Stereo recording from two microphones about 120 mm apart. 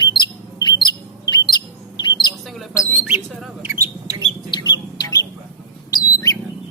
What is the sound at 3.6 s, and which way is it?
Bird, 20° right (ahead or behind).